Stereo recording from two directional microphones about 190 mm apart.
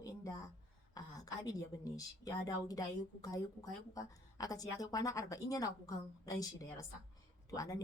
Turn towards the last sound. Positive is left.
turn(degrees=20)  # may be behind; listen again after turning